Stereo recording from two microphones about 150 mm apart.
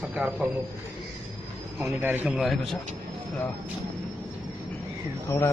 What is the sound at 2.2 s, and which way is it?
Speech, centre (ahead or behind).